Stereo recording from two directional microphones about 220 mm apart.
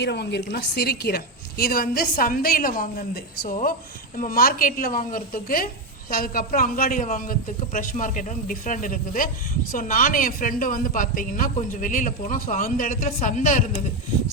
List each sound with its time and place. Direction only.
0.0 s a woman's voice: 50° left (ahead or behind)